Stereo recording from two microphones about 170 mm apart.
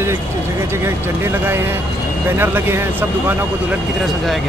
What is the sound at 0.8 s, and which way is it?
Speech, 15° right (ahead or behind).